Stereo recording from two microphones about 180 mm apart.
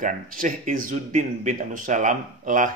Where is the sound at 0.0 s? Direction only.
50° right (ahead or behind).